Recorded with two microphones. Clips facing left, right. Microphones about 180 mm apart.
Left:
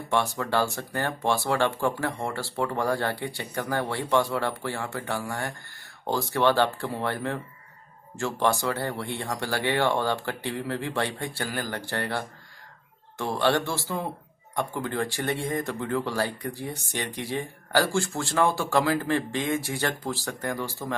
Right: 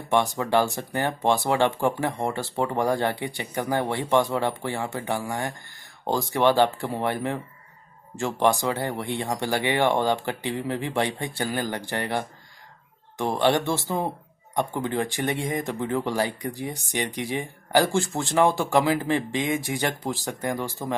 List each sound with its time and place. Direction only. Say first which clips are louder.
0.1 s speech: right 4 dB; 15° right (ahead or behind)